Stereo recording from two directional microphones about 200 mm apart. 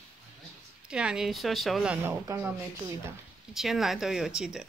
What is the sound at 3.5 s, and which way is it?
Speech, centre (ahead or behind).